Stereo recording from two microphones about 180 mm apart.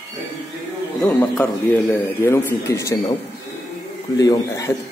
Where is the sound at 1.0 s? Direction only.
10° left (ahead or behind).